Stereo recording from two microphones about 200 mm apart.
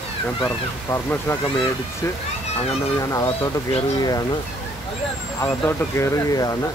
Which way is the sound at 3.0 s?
15° left (ahead or behind).